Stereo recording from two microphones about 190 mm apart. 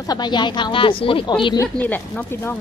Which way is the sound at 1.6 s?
10° left (ahead or behind).